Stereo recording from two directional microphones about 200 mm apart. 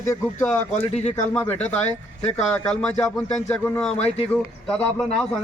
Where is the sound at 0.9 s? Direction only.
35° left (ahead or behind).